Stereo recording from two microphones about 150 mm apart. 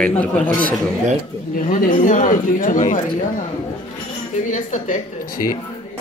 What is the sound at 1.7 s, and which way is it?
Speech, 60° left (ahead or behind).